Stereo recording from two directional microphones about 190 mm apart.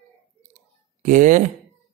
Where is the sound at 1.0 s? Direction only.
40° right (ahead or behind).